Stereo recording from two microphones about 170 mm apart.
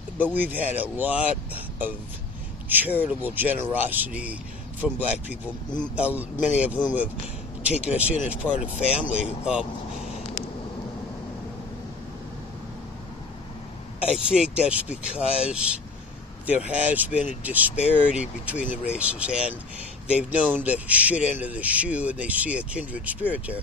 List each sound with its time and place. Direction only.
0.2 s speech: 10° right (ahead or behind)
8.5 s speech: 40° left (ahead or behind)
9.0 s speech: 5° right (ahead or behind)
13.9 s speech: 5° right (ahead or behind)